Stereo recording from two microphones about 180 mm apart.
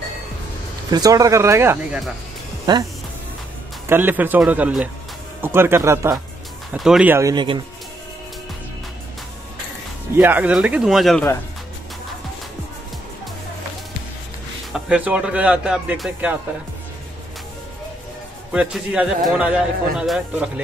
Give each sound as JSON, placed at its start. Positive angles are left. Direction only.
{"t": 0.8, "sound": "speech", "side_deg": -20}
{"t": 3.9, "sound": "speech", "side_deg": -10}
{"t": 6.7, "sound": "speech", "side_deg": -5}
{"t": 10.1, "sound": "a man's voice", "side_deg": -10}
{"t": 14.7, "sound": "speech", "side_deg": -5}
{"t": 18.5, "sound": "a man's voice", "side_deg": -5}